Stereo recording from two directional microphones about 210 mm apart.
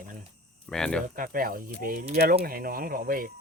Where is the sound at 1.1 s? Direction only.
40° right (ahead or behind).